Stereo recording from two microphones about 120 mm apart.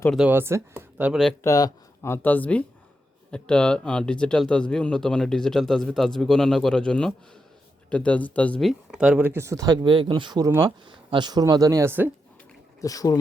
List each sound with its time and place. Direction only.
0.2 s speech: 15° right (ahead or behind)
1.1 s speech: 5° left (ahead or behind)
1.5 s speech: 30° left (ahead or behind); by 8.7 s 10° left (ahead or behind)
8.9 s speech: 5° right (ahead or behind); by 10.4 s 35° right (ahead or behind)
10.4 s speech: 25° right (ahead or behind)
10.8 s speech: 40° right (ahead or behind); by 12.1 s 15° right (ahead or behind)
12.8 s speech: 30° left (ahead or behind)